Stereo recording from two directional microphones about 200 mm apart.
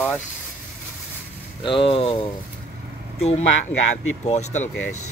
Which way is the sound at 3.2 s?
30° left (ahead or behind).